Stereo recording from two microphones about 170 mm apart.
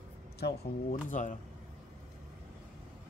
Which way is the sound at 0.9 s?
50° left (ahead or behind).